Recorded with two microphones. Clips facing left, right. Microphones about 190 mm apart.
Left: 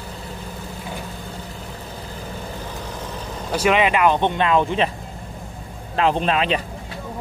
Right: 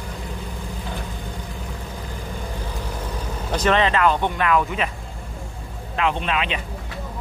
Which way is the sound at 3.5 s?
10° left (ahead or behind).